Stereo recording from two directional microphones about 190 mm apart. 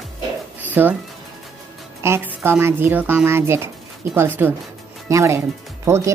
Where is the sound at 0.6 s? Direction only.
10° right (ahead or behind).